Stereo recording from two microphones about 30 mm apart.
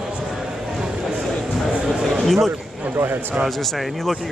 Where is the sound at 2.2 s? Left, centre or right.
Centre.